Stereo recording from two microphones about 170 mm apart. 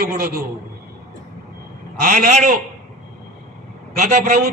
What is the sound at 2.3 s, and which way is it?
Speech, 40° right (ahead or behind).